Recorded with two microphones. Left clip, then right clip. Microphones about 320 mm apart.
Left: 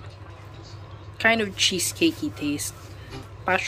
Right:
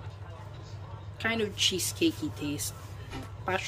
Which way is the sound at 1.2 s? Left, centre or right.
Centre.